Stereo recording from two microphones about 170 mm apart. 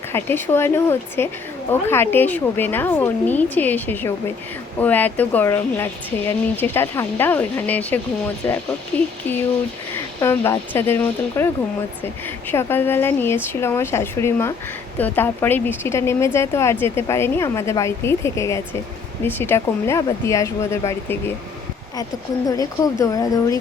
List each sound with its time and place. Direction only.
0.1 s speech: 10° left (ahead or behind)
12.5 s speech: 15° left (ahead or behind)
22.4 s speech: 20° left (ahead or behind)